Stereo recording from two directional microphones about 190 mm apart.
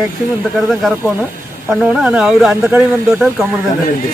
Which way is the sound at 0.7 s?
Centre (ahead or behind).